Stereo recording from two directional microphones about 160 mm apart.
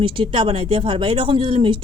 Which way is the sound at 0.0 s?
30° right (ahead or behind).